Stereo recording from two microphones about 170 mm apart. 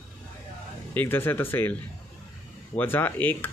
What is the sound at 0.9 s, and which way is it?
Speech, 15° left (ahead or behind).